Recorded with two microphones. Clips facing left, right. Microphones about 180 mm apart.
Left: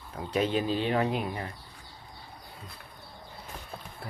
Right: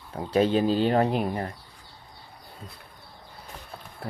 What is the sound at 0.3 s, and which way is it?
Speech, 35° right (ahead or behind).